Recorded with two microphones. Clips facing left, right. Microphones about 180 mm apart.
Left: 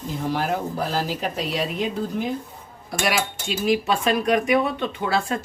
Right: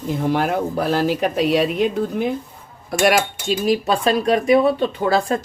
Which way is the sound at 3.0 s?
45° right (ahead or behind).